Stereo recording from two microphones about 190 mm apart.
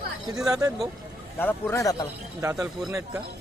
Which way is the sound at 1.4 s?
10° left (ahead or behind).